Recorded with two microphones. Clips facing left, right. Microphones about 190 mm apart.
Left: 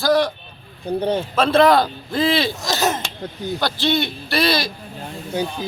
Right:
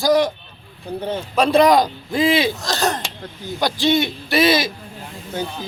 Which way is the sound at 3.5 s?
15° right (ahead or behind).